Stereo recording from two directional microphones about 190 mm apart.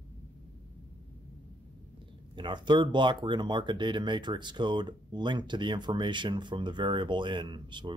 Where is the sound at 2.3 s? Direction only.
25° right (ahead or behind).